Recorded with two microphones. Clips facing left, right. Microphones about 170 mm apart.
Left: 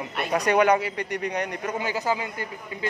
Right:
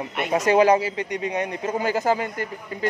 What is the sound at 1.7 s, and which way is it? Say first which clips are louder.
A man's voice: right 5 dB; 45° right (ahead or behind).